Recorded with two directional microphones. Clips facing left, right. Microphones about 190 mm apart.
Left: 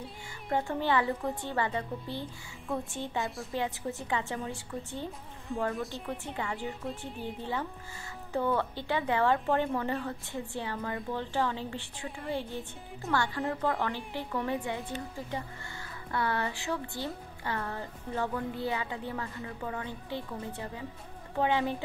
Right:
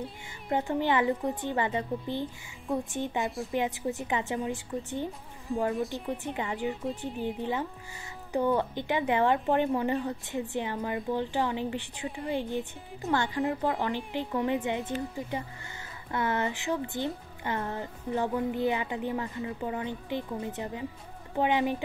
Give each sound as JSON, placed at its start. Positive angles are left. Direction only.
{"t": 0.5, "sound": "speech", "side_deg": -20}
{"t": 5.5, "sound": "speech", "side_deg": 0}
{"t": 6.2, "sound": "speech", "side_deg": -15}